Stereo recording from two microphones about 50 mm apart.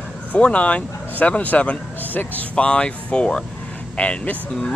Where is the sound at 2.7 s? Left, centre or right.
Centre.